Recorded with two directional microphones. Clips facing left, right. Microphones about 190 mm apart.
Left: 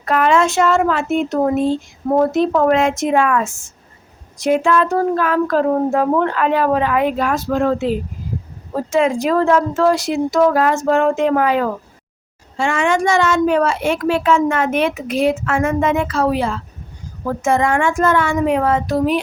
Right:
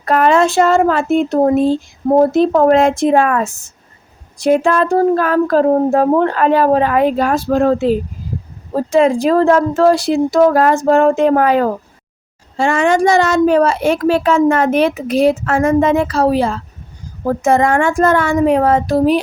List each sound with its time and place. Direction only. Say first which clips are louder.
0.0 s a woman's voice: right 3 dB; 40° right (ahead or behind)